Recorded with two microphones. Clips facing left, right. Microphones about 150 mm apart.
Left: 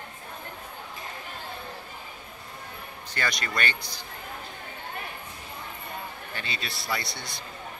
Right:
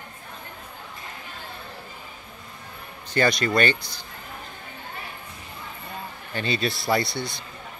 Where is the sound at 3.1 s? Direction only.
25° right (ahead or behind).